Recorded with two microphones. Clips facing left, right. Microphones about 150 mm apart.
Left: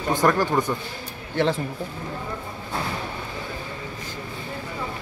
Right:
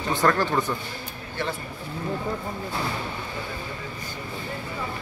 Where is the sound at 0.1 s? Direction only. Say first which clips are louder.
Left 2 dB; 15° left (ahead or behind).